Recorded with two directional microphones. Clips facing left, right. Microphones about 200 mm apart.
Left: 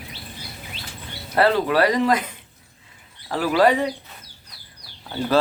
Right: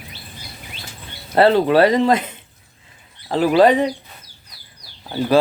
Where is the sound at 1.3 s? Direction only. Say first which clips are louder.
Right 5 dB; 25° right (ahead or behind).